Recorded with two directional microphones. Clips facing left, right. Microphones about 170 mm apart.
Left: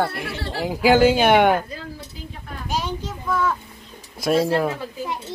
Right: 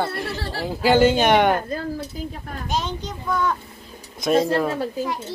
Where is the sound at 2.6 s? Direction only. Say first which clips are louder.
Even; 10° left (ahead or behind).